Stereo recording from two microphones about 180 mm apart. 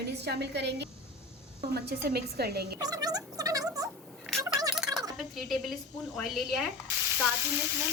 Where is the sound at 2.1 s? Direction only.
60° right (ahead or behind).